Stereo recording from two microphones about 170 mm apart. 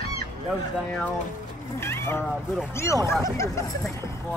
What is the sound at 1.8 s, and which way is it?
Speech, 15° left (ahead or behind).